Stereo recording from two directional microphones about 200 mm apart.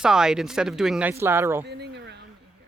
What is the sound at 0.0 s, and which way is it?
Speech, 5° right (ahead or behind).